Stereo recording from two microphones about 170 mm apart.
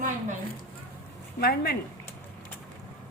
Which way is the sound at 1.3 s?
60° left (ahead or behind).